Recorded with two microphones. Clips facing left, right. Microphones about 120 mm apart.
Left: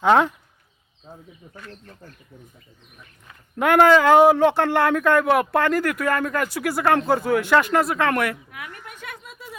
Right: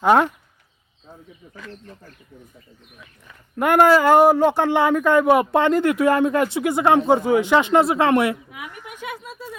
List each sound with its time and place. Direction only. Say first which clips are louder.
0.0 s speech: right 1 dB; 10° right (ahead or behind)
3.6 s speech: even; 10° right (ahead or behind); by 8.4 s 25° right (ahead or behind)
8.4 s a woman's voice: right 2 dB; 10° right (ahead or behind)